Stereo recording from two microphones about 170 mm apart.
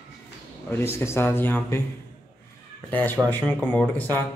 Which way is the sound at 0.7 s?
15° left (ahead or behind).